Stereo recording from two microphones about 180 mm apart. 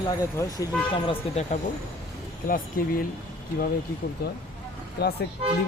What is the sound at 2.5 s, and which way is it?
Speech, 50° left (ahead or behind).